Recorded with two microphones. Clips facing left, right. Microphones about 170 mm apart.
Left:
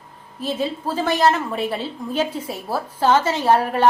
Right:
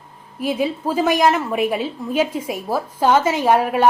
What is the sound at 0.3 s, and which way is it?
A woman's voice, 10° right (ahead or behind).